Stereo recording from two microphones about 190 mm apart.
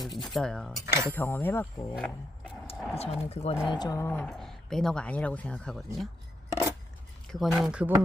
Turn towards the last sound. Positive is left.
turn(degrees=-5)  # may be behind; listen again after turning